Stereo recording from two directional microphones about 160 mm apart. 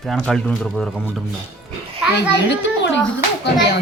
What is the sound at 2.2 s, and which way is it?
Speech, 90° left.